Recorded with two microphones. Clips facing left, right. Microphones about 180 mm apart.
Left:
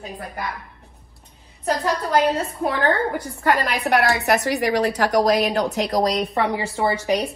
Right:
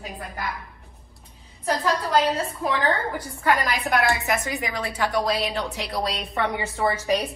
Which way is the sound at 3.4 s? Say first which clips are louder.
Left 2 dB; 60° left (ahead or behind).